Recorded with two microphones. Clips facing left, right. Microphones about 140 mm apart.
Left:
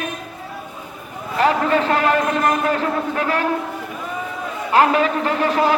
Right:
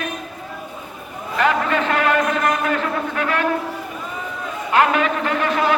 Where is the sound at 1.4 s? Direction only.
35° left (ahead or behind).